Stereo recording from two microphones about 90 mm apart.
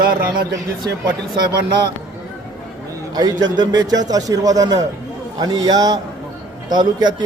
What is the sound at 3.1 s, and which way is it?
A man's voice, 50° right (ahead or behind).